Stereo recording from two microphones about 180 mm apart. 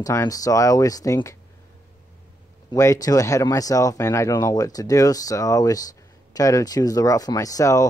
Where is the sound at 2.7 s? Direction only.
15° left (ahead or behind).